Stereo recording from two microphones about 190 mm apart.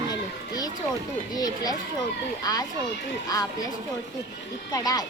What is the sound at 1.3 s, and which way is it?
Speech, 20° left (ahead or behind).